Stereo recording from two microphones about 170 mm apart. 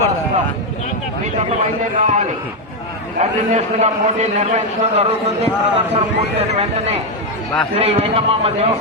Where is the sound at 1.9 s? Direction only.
45° right (ahead or behind).